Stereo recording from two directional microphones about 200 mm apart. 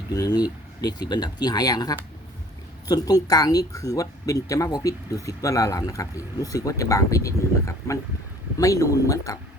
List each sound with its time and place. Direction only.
0.1 s speech: 20° left (ahead or behind)